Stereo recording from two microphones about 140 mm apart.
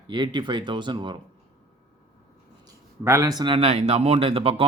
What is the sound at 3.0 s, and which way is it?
Speech, 20° right (ahead or behind).